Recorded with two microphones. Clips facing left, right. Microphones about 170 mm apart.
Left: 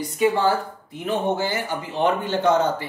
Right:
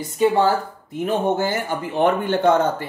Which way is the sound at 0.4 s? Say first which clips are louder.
Right 3 dB; 40° right (ahead or behind).